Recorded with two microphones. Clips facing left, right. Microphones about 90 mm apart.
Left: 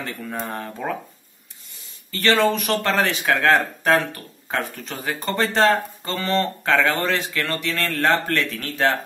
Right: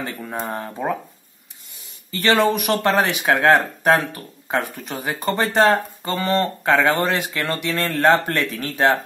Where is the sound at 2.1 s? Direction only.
15° right (ahead or behind).